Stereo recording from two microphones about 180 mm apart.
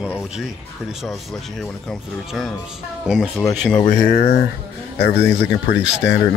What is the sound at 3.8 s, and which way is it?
Speech, 50° left (ahead or behind).